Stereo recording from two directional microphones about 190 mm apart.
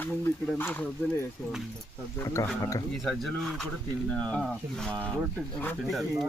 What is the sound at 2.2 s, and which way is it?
Speech, 15° left (ahead or behind).